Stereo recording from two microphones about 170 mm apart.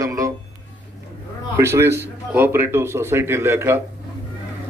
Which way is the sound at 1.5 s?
15° right (ahead or behind).